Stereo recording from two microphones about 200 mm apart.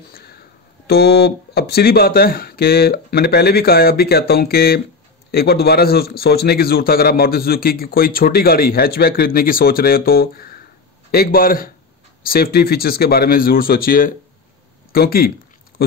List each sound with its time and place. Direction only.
0.1 s music: 50° left (ahead or behind)
0.8 s a man's voice: 55° left (ahead or behind)